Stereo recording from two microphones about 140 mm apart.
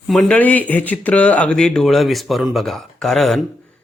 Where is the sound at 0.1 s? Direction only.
5° left (ahead or behind).